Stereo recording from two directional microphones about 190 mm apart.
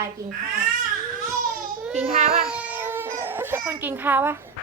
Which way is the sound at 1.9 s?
35° right (ahead or behind).